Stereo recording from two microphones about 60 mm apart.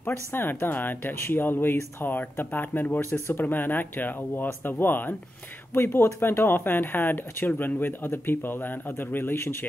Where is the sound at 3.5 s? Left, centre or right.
Left.